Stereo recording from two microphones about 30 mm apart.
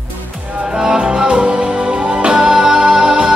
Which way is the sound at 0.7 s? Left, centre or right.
Right.